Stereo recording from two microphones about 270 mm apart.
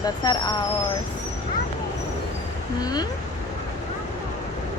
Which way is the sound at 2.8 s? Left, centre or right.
Centre.